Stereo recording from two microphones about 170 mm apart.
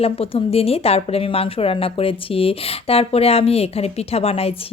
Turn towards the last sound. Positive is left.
turn(degrees=35)  # may be behind; listen again after turning